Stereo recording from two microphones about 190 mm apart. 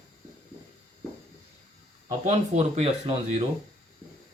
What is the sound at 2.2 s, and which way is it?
Speech, 35° right (ahead or behind).